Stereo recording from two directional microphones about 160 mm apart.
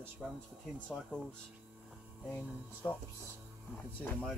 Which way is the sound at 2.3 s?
10° left (ahead or behind).